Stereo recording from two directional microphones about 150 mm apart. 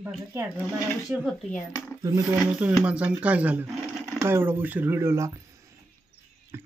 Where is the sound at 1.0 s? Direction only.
5° right (ahead or behind).